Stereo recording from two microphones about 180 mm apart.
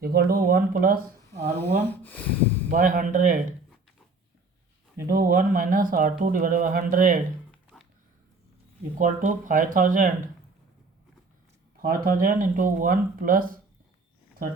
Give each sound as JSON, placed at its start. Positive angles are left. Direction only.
{"t": 0.0, "sound": "speech", "side_deg": -60}
{"t": 1.5, "sound": "speech", "side_deg": 10}
{"t": 2.6, "sound": "speech", "side_deg": -45}
{"t": 5.0, "sound": "speech", "side_deg": -50}
{"t": 7.5, "sound": "a sound", "side_deg": 5}
{"t": 9.0, "sound": "speech", "side_deg": -45}
{"t": 11.8, "sound": "speech", "side_deg": -50}